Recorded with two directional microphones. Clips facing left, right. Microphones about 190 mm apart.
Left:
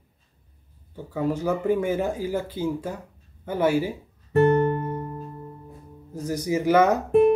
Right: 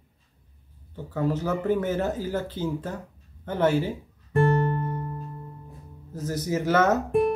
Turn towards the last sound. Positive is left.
turn(degrees=20)  # may be behind; listen again after turning